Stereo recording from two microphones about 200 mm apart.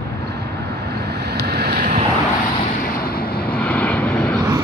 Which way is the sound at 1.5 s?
55° right (ahead or behind).